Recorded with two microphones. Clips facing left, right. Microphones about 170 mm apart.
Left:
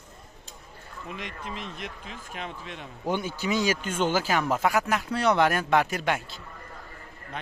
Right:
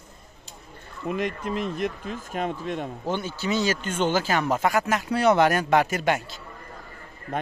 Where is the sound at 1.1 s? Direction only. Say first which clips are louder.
Right 10 dB; 50° right (ahead or behind).